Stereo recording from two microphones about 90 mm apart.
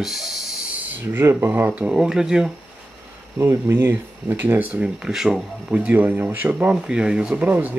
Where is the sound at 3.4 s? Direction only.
25° right (ahead or behind); by 5.4 s 5° right (ahead or behind).